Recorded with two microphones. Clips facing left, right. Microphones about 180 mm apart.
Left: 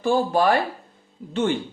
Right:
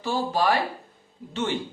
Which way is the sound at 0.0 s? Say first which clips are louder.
Left 5 dB; 55° left (ahead or behind).